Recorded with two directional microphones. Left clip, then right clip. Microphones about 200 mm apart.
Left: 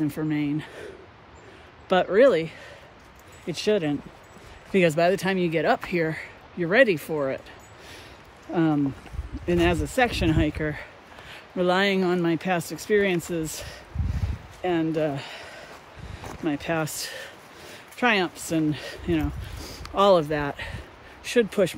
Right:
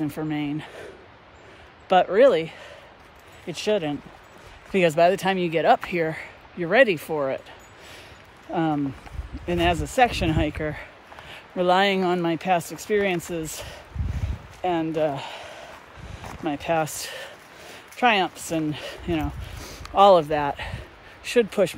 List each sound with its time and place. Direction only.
0.0 s speech: 15° right (ahead or behind)
1.9 s speech: 15° right (ahead or behind)
8.5 s speech: 10° right (ahead or behind)